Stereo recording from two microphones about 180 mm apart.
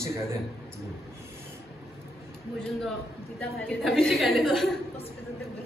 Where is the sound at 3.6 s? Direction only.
5° left (ahead or behind).